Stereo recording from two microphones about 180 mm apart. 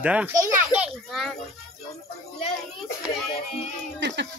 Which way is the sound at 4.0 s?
75° right (ahead or behind).